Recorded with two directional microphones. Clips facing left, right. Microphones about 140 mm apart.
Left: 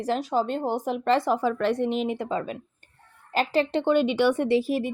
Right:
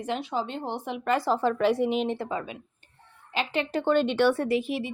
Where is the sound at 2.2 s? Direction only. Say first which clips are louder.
Left 4 dB; 35° left (ahead or behind).